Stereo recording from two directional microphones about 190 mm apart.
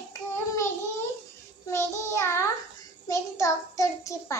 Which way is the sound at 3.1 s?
15° left (ahead or behind).